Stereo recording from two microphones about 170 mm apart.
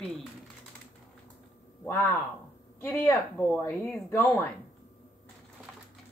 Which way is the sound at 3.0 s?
15° left (ahead or behind).